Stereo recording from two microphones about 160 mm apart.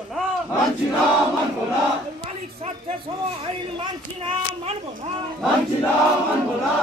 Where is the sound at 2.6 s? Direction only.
40° right (ahead or behind).